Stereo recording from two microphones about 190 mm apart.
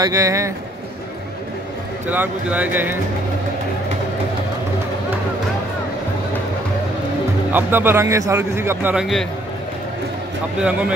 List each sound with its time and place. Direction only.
0.0 s a man's voice: 20° right (ahead or behind)
2.0 s a man's voice: 10° right (ahead or behind)
7.5 s a man's voice: 10° right (ahead or behind)
10.6 s a man's voice: 5° right (ahead or behind)